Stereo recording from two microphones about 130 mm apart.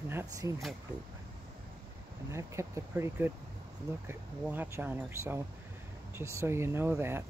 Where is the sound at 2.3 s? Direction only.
20° right (ahead or behind).